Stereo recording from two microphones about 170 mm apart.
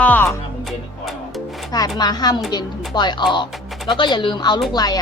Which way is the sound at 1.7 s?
20° left (ahead or behind).